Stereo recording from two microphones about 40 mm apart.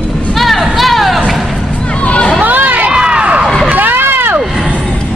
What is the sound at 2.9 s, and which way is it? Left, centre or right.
Crowd, right.